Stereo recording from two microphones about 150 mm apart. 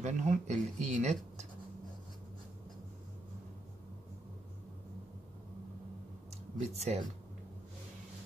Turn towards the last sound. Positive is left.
turn(degrees=-45)  # may be behind; listen again after turning